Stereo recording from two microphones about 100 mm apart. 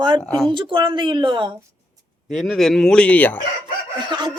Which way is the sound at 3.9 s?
45° right (ahead or behind).